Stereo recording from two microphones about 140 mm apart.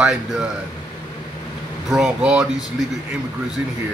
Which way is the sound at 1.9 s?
5° right (ahead or behind).